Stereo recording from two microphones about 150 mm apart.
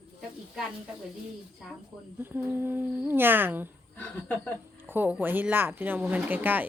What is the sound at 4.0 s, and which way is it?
Speech, 10° left (ahead or behind).